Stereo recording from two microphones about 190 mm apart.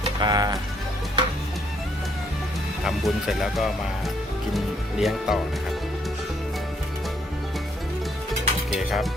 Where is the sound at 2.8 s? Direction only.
Centre (ahead or behind).